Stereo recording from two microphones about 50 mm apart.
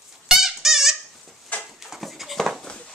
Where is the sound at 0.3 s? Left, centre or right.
Centre.